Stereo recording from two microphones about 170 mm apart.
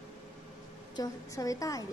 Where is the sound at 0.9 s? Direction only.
20° left (ahead or behind).